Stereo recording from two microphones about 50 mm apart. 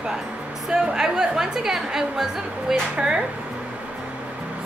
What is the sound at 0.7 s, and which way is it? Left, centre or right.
A woman's voice, centre.